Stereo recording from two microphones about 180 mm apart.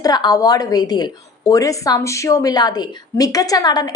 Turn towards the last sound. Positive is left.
turn(degrees=20)  # may be behind; listen again after turning